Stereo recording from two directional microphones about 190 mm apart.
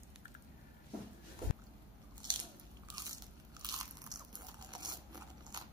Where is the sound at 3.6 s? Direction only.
20° right (ahead or behind).